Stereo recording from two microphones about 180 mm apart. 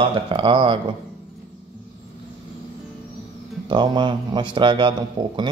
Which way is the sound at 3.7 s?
25° right (ahead or behind).